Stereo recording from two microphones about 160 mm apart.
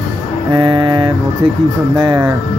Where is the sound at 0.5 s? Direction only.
30° right (ahead or behind).